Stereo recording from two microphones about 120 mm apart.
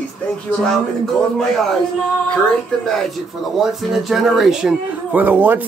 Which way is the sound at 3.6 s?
Centre (ahead or behind).